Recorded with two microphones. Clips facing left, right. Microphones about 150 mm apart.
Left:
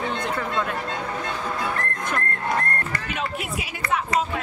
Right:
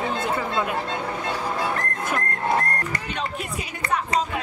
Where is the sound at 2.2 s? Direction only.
25° right (ahead or behind).